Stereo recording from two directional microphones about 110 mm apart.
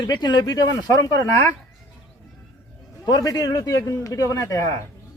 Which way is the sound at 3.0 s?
35° left (ahead or behind).